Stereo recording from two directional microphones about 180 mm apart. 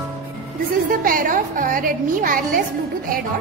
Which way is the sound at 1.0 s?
50° right (ahead or behind).